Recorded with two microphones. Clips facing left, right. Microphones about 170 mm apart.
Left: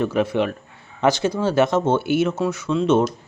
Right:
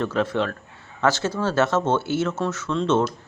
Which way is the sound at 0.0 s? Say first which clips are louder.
Left 3 dB; 15° left (ahead or behind).